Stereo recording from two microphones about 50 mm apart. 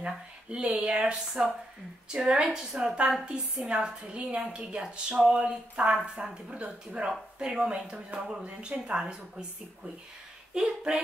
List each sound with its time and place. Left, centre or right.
0.0 s speech: right
10.5 s speech: centre